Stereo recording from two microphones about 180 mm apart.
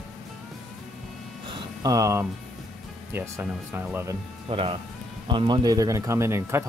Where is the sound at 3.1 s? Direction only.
10° right (ahead or behind).